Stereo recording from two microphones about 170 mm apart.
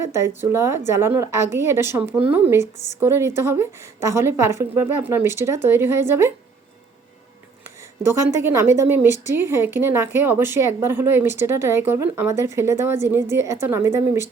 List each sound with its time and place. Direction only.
0.0 s speech: 15° right (ahead or behind)
8.0 s speech: 15° right (ahead or behind)